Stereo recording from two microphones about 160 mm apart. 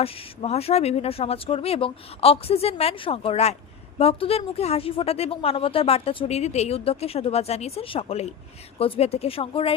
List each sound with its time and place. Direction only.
0.0 s speech: 40° left (ahead or behind)